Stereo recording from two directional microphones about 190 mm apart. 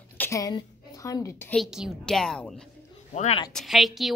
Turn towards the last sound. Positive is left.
turn(degrees=0)  # may be behind; listen again after turning